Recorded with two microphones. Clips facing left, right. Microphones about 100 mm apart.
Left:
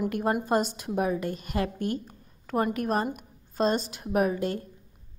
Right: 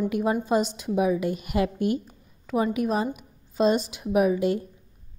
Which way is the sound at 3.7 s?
40° left (ahead or behind).